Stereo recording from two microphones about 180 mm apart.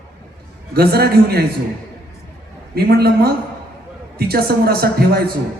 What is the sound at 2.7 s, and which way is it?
A man's voice, 60° right (ahead or behind).